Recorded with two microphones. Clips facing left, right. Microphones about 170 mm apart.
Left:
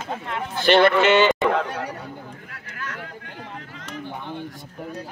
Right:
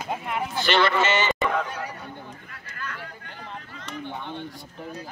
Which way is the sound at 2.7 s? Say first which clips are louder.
Left 2 dB; 80° left.